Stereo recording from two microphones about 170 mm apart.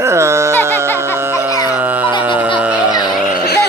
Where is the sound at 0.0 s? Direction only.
15° right (ahead or behind).